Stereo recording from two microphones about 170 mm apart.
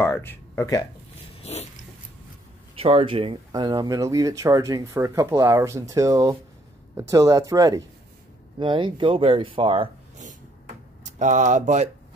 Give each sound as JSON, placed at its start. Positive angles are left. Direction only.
{"t": 0.0, "sound": "speech", "side_deg": 15}
{"t": 1.4, "sound": "dog", "side_deg": 40}
{"t": 2.8, "sound": "speech", "side_deg": -35}
{"t": 11.1, "sound": "speech", "side_deg": -45}